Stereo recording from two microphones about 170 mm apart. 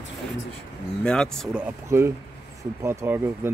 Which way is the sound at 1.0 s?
5° left (ahead or behind).